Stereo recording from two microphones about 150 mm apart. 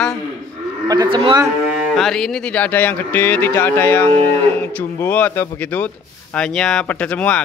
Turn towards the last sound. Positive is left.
turn(degrees=10)  # may be behind; listen again after turning